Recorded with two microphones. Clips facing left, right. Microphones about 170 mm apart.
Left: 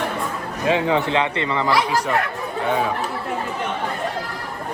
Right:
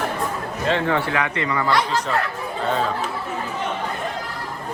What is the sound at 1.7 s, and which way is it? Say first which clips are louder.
Speech: left 2 dB; 10° left (ahead or behind).